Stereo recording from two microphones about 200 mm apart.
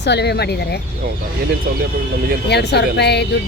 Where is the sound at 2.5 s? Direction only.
55° left (ahead or behind).